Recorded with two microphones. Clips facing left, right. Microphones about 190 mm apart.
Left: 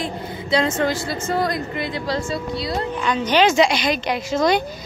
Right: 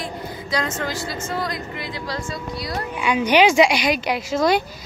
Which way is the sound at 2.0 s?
25° left (ahead or behind).